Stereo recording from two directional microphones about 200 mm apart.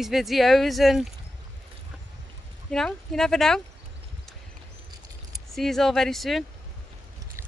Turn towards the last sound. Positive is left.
turn(degrees=0)  # may be behind; listen again after turning